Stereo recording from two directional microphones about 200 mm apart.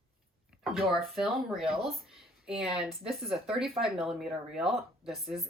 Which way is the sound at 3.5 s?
Centre (ahead or behind).